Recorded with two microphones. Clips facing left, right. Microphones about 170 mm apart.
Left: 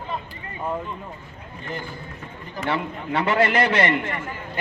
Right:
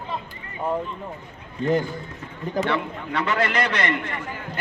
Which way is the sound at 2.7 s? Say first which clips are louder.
Left 1 dB; 30° left (ahead or behind).